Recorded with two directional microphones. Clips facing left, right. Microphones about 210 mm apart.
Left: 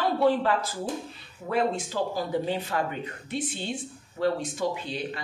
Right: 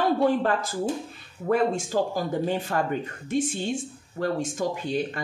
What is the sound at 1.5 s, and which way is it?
Speech, 45° right (ahead or behind).